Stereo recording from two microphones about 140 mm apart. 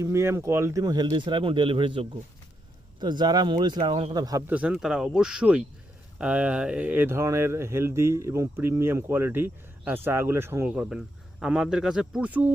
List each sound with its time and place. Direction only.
0.0 s speech: 20° right (ahead or behind)
4.4 s speech: 10° right (ahead or behind)